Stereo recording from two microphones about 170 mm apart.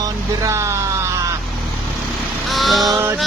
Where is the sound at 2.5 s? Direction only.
Centre (ahead or behind).